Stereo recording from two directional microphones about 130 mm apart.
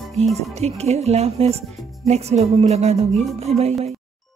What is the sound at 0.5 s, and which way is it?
Speech, 55° right (ahead or behind).